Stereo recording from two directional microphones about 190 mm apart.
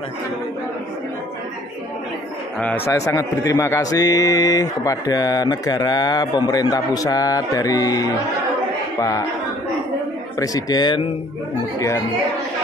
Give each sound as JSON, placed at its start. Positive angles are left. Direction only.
{"t": 2.6, "sound": "a man's voice", "side_deg": 10}
{"t": 10.4, "sound": "a man's voice", "side_deg": 20}